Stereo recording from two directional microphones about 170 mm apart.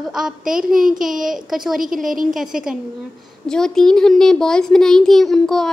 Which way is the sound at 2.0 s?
55° right (ahead or behind).